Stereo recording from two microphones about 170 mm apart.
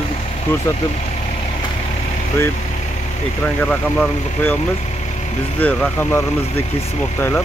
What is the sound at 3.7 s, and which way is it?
Speech, 5° left (ahead or behind).